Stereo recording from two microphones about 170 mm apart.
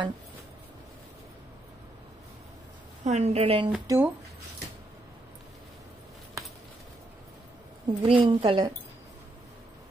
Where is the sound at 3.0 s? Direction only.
40° right (ahead or behind).